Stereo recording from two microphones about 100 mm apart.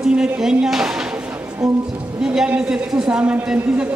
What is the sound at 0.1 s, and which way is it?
Speech, 5° right (ahead or behind).